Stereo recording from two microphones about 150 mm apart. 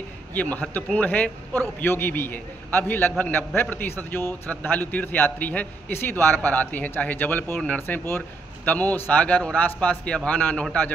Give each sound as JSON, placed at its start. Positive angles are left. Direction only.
{"t": 0.3, "sound": "a man's voice", "side_deg": 10}